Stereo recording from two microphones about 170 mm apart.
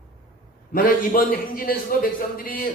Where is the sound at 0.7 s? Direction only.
55° left (ahead or behind).